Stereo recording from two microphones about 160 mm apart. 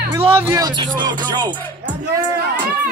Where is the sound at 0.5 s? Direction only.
25° right (ahead or behind).